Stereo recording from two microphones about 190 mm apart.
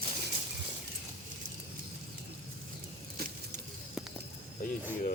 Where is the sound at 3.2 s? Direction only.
55° right (ahead or behind).